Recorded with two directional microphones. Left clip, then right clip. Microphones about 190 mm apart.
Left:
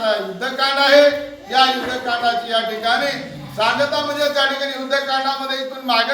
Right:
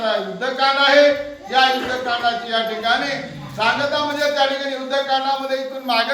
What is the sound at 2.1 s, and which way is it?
Speech, 15° left (ahead or behind).